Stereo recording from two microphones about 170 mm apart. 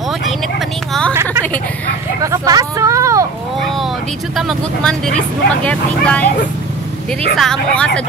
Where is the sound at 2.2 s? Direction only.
20° right (ahead or behind).